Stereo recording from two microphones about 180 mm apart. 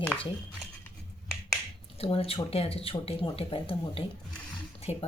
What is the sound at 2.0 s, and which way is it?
Speech, 35° left (ahead or behind).